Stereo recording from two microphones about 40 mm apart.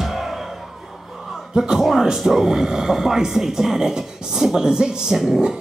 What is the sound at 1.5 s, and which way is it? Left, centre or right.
Speech, centre.